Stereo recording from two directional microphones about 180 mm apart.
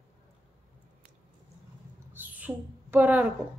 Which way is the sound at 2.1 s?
10° right (ahead or behind).